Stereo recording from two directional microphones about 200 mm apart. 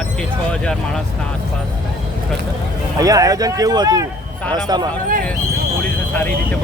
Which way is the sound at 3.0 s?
15° right (ahead or behind).